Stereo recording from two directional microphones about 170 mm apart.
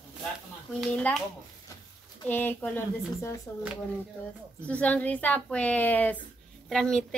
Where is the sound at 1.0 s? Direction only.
5° left (ahead or behind).